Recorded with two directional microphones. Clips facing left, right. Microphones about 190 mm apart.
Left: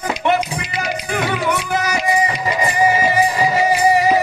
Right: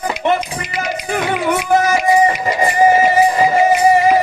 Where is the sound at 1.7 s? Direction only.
50° right (ahead or behind).